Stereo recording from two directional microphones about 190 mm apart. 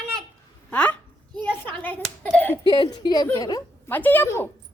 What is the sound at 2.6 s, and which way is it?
A woman's voice, 25° left (ahead or behind).